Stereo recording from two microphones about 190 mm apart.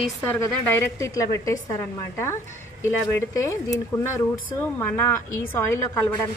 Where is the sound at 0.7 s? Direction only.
15° left (ahead or behind).